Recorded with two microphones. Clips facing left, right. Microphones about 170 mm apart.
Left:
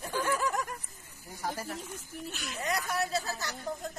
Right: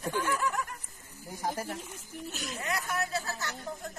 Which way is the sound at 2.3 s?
45° right (ahead or behind).